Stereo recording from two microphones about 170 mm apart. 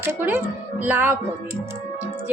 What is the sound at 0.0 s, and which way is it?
A woman's voice, 15° right (ahead or behind).